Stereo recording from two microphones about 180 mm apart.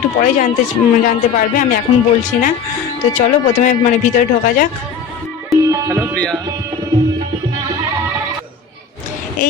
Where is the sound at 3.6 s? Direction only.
45° left (ahead or behind).